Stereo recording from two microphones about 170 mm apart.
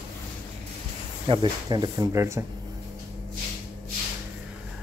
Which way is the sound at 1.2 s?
25° right (ahead or behind).